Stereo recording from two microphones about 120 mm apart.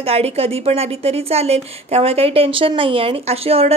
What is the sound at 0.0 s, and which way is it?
A woman's voice, 60° right (ahead or behind).